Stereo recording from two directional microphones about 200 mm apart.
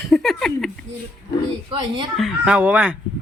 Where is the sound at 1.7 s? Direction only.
25° right (ahead or behind).